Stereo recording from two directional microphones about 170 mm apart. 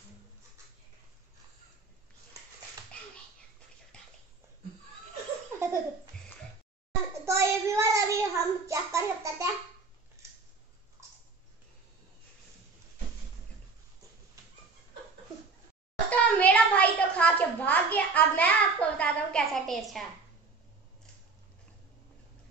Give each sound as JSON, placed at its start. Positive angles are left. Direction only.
{"t": 3.9, "sound": "bathtub", "side_deg": 5}
{"t": 7.2, "sound": "child singing", "side_deg": -15}
{"t": 16.1, "sound": "a sound", "side_deg": 10}